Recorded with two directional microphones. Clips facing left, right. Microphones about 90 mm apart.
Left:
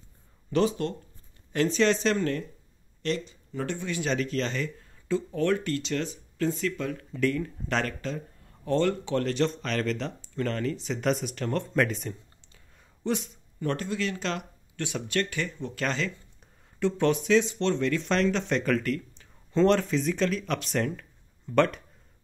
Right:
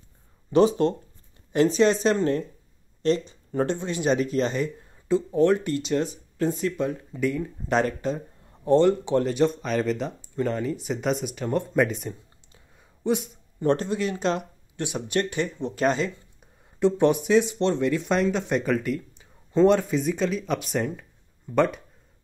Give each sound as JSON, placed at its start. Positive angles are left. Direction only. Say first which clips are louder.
{"t": 0.5, "sound": "speech", "louder": "right 6 dB", "side_deg": -20}
{"t": 7.2, "sound": "speech", "louder": "even", "side_deg": -10}
{"t": 12.5, "sound": "a sound", "louder": "right 3 dB", "side_deg": -10}
{"t": 13.6, "sound": "speech", "louder": "right 6 dB", "side_deg": -25}